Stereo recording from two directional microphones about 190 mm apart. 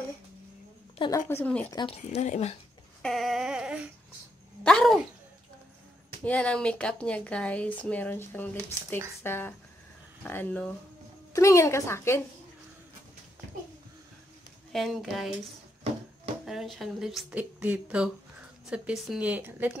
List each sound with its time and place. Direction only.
0.9 s a woman's voice: 25° left (ahead or behind)
1.3 s a woman's voice: 10° left (ahead or behind)
2.0 s speech: 40° left (ahead or behind)
3.0 s speech: centre (ahead or behind)
6.2 s a woman's voice: 5° left (ahead or behind)
14.7 s a woman's voice: centre (ahead or behind)